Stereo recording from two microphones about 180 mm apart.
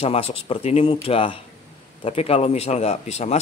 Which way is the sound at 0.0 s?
35° left (ahead or behind).